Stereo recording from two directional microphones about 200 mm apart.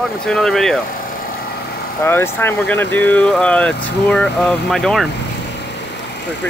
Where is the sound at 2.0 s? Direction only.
10° left (ahead or behind).